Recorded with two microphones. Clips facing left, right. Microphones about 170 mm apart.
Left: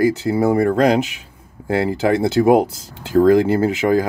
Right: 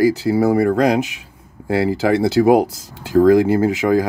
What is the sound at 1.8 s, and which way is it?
Speech, 20° left (ahead or behind).